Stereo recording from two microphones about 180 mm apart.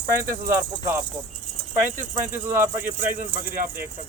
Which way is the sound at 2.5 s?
10° right (ahead or behind).